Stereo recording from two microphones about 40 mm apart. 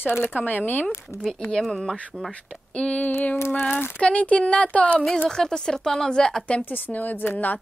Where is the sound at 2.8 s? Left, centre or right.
Left.